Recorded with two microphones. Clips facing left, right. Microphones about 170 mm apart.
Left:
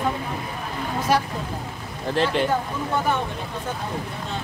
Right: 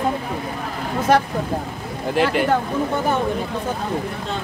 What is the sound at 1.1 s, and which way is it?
Speech, 55° right (ahead or behind).